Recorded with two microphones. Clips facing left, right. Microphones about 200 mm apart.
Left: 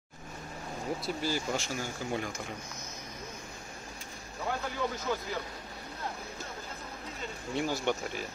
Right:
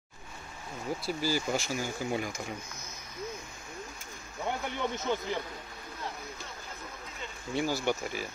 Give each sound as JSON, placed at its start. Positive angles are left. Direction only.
{"t": 1.0, "sound": "speech", "side_deg": -5}
{"t": 4.5, "sound": "speech", "side_deg": -25}
{"t": 7.5, "sound": "speech", "side_deg": -5}